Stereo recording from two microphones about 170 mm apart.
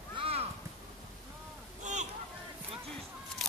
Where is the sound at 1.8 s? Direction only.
45° right (ahead or behind).